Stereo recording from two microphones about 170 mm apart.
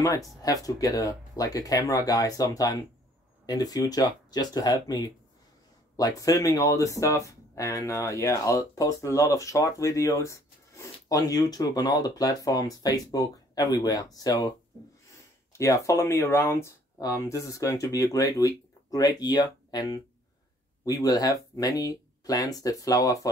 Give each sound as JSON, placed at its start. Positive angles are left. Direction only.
{"t": 0.4, "sound": "speech", "side_deg": 20}
{"t": 15.5, "sound": "speech", "side_deg": 20}